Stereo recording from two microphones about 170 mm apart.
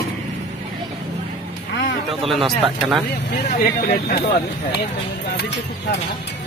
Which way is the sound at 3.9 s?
45° left (ahead or behind).